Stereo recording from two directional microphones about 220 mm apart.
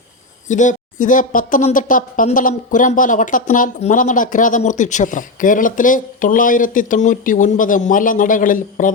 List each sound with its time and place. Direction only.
0.4 s speech: 35° left (ahead or behind)